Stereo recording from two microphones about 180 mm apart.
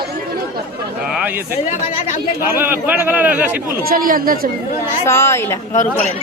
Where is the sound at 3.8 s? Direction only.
50° right (ahead or behind).